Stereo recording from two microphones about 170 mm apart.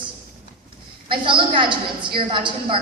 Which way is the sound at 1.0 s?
30° right (ahead or behind).